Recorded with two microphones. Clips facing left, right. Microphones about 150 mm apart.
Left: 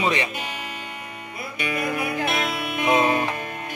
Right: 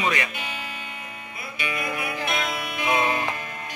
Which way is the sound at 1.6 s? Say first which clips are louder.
Left 4 dB; 45° left (ahead or behind).